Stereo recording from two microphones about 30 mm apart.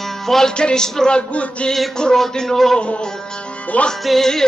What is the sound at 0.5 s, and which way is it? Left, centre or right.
Music, left.